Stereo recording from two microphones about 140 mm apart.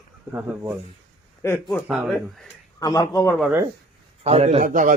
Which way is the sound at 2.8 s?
25° left (ahead or behind).